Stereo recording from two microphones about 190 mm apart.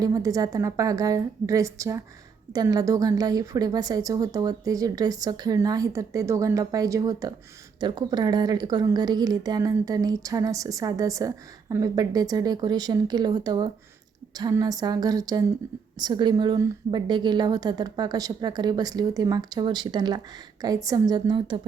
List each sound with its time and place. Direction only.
0.0 s a woman's voice: 20° right (ahead or behind)